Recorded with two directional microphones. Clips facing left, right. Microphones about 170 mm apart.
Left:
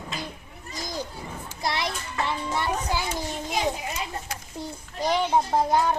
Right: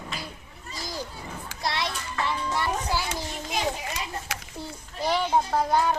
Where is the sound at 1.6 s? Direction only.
20° left (ahead or behind).